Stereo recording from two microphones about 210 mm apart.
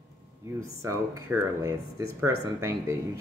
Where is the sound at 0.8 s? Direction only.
15° right (ahead or behind).